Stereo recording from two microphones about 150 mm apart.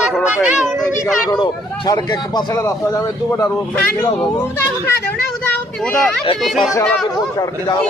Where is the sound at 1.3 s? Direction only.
25° left (ahead or behind).